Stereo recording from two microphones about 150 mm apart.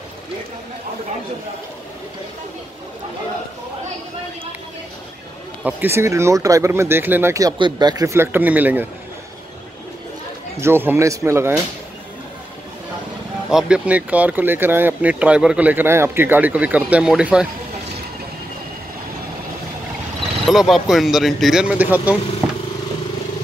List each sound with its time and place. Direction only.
5.6 s speech: 10° right (ahead or behind)
10.6 s speech: 15° right (ahead or behind)
13.5 s speech: 5° right (ahead or behind)
20.4 s speech: centre (ahead or behind)